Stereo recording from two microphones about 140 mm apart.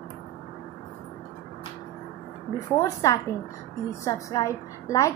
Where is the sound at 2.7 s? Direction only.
20° left (ahead or behind).